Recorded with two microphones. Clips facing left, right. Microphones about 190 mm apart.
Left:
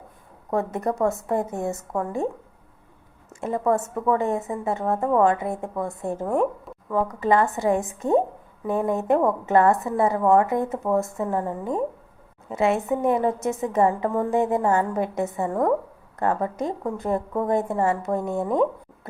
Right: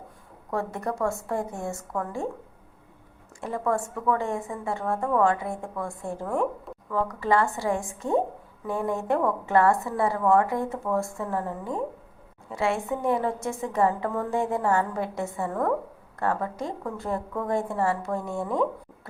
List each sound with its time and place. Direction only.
0.5 s a woman's voice: 20° left (ahead or behind)
3.4 s a woman's voice: 20° left (ahead or behind)